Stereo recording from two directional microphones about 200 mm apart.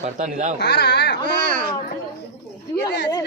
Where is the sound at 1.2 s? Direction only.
45° right (ahead or behind).